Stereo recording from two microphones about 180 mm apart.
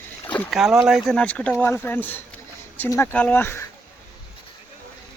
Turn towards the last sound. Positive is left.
turn(degrees=15)  # may be behind; listen again after turning